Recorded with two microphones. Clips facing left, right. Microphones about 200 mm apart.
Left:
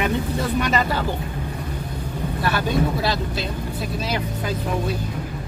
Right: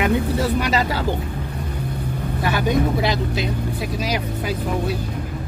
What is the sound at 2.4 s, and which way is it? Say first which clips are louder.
Speech: right 2 dB; 15° right (ahead or behind).